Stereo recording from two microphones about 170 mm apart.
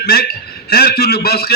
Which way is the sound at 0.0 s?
65° left (ahead or behind).